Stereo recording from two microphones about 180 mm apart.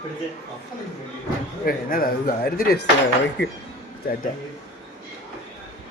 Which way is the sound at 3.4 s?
70° left (ahead or behind).